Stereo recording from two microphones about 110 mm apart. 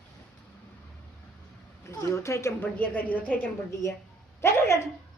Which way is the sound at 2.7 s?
15° left (ahead or behind).